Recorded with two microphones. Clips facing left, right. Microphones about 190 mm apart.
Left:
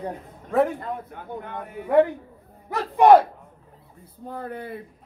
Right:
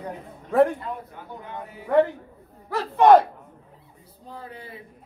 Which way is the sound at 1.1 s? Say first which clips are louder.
Left 3 dB; 55° left (ahead or behind).